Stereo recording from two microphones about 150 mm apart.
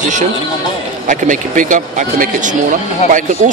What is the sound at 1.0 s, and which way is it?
A man's voice, 55° right (ahead or behind).